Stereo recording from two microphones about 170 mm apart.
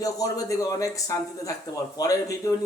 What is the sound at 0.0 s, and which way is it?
A man's voice, 20° left (ahead or behind).